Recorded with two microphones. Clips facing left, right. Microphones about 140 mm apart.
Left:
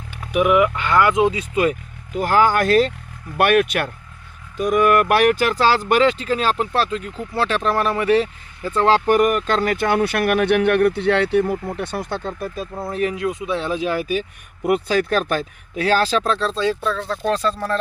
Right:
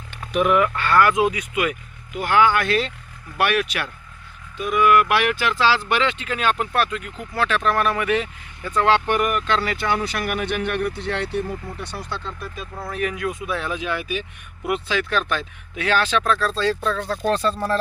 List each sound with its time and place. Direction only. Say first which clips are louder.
0.1 s speech: left 2 dB; 10° left (ahead or behind); by 12.6 s 45° left (ahead or behind)
12.7 s speech: left 3 dB; 25° left (ahead or behind)
16.8 s speech: left 1 dB; centre (ahead or behind)